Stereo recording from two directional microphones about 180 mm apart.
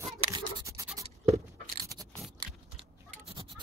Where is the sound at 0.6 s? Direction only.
15° right (ahead or behind).